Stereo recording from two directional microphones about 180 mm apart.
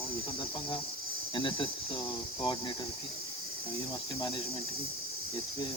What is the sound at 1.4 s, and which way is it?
Speech, 25° left (ahead or behind).